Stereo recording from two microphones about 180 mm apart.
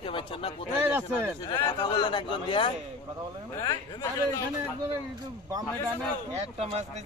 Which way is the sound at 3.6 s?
20° left (ahead or behind).